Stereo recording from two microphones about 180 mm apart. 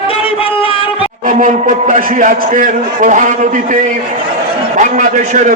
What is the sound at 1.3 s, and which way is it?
A man's voice, 50° right (ahead or behind).